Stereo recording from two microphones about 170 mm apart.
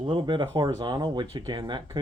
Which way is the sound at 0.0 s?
30° right (ahead or behind).